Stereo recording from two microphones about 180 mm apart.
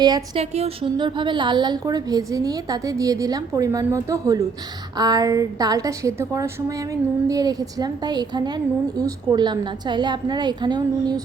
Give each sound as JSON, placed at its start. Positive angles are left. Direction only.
{"t": 0.0, "sound": "a woman's voice", "side_deg": -20}